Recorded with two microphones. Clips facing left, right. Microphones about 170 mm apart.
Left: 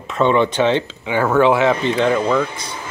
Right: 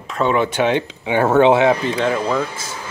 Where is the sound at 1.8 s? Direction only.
5° right (ahead or behind).